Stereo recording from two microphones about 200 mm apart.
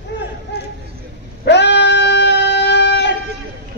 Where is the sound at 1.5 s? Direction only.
60° left (ahead or behind).